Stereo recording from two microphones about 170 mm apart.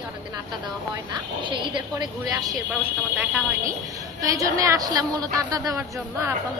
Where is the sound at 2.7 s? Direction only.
5° right (ahead or behind).